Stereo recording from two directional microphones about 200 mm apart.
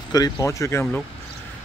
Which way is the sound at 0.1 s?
15° left (ahead or behind).